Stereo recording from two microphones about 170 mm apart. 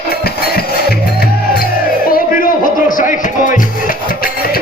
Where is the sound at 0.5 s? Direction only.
65° left (ahead or behind).